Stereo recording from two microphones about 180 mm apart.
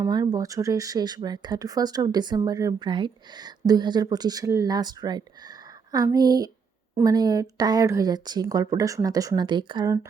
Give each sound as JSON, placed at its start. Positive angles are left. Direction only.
{"t": 0.0, "sound": "speech", "side_deg": -20}